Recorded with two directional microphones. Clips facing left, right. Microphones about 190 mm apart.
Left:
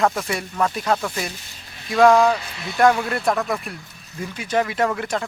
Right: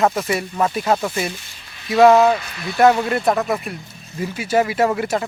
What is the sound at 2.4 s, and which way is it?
Speech, 25° left (ahead or behind).